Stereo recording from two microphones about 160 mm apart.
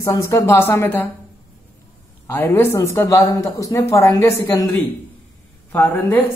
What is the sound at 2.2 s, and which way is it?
Speech, 15° left (ahead or behind).